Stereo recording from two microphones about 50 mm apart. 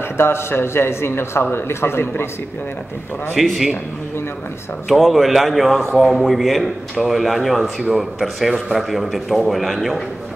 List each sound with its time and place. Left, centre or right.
0.2 s a man's voice: left
3.3 s a man's voice: centre
4.8 s a man's voice: centre